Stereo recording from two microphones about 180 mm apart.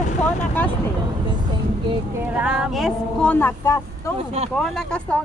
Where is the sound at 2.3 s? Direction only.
5° right (ahead or behind); by 4.1 s 15° left (ahead or behind).